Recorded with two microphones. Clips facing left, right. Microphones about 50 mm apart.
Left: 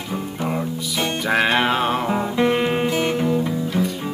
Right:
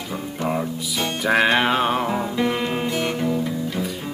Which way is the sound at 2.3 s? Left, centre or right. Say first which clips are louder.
Left 4 dB; centre.